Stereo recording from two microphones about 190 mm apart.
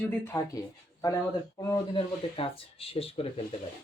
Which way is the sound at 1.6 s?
20° left (ahead or behind).